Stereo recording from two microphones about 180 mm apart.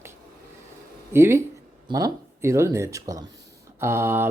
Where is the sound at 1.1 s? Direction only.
15° right (ahead or behind).